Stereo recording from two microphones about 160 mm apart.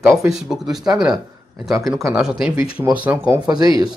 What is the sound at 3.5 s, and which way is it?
Speech, 25° right (ahead or behind).